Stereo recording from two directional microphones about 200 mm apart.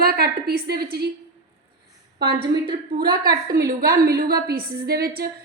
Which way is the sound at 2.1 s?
50° right (ahead or behind).